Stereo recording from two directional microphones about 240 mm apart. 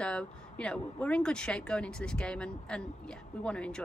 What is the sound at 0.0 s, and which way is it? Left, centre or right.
Speech, centre.